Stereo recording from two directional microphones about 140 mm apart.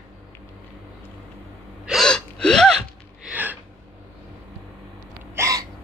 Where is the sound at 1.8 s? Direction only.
Centre (ahead or behind).